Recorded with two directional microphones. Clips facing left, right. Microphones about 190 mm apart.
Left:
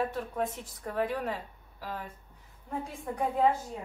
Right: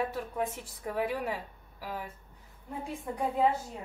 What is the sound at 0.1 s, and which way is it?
A woman's voice, 10° right (ahead or behind).